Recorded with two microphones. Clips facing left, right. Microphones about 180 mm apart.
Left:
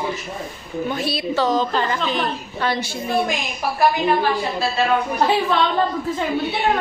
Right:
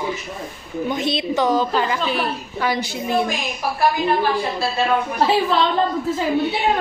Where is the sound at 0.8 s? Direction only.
20° right (ahead or behind).